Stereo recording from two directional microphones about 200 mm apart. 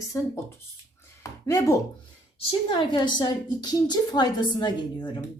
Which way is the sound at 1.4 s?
15° left (ahead or behind).